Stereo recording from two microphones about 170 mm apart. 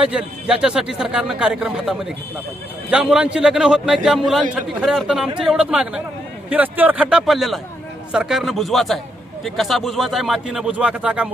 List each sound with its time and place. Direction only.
0.0 s a man's voice: 5° right (ahead or behind)